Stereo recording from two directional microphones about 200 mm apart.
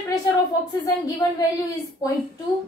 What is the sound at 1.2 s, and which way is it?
Speech, 15° left (ahead or behind).